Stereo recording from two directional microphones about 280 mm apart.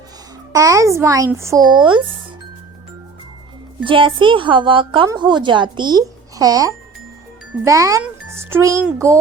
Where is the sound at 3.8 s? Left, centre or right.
Centre.